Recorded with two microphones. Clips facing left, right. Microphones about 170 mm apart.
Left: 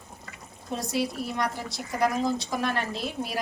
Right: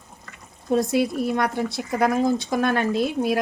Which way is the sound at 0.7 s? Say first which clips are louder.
Right 8 dB; 55° right (ahead or behind).